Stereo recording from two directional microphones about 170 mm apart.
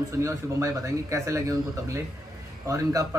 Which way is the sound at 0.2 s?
20° right (ahead or behind).